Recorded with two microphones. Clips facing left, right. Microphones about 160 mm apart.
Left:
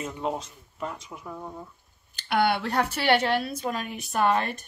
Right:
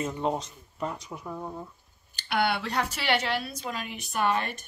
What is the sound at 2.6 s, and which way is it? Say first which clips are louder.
A woman's voice: left 4 dB; 50° left (ahead or behind).